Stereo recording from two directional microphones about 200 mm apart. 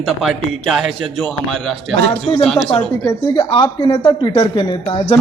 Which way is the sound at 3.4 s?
20° left (ahead or behind).